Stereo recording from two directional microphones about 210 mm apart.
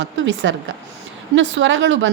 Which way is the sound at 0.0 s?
60° right (ahead or behind).